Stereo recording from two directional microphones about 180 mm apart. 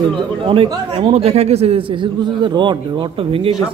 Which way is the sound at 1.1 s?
35° right (ahead or behind).